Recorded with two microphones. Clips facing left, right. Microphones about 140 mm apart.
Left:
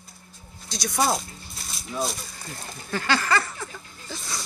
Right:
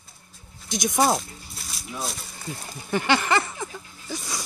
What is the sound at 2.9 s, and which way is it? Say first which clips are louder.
Speech: right 2 dB; 20° right (ahead or behind).